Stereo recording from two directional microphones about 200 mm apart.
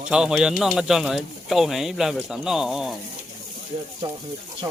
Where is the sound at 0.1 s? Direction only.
5° right (ahead or behind).